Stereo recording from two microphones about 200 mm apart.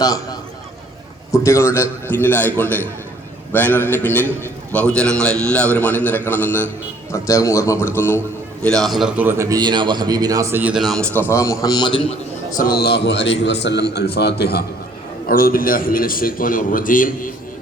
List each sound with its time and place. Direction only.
0.0 s a man's voice: 15° left (ahead or behind)
12.5 s a man's voice: 45° left (ahead or behind)